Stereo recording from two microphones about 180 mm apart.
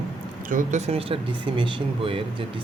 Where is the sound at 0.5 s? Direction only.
40° right (ahead or behind).